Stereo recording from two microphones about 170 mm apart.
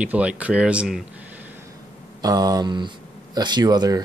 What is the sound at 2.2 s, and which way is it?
Speech, 20° right (ahead or behind).